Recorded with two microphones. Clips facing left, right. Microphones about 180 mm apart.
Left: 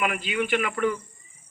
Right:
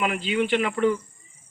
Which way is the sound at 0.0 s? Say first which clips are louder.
Right 3 dB; 25° right (ahead or behind).